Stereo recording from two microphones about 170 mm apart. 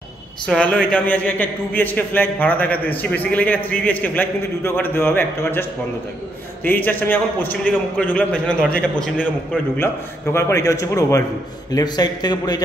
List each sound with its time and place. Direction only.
0.5 s a man's voice: 5° left (ahead or behind)
10.3 s a man's voice: 15° left (ahead or behind)